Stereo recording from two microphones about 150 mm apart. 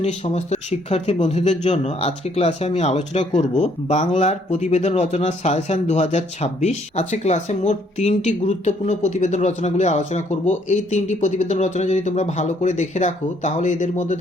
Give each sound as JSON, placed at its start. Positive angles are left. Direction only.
{"t": 0.0, "sound": "speech", "side_deg": 50}